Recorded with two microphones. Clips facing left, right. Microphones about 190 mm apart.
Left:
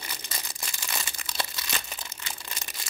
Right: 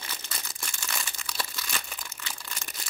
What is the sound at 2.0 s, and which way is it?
Crumpling, 20° left (ahead or behind).